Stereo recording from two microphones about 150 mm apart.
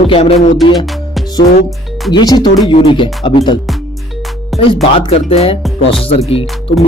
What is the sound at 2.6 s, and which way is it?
Speech, 35° left (ahead or behind).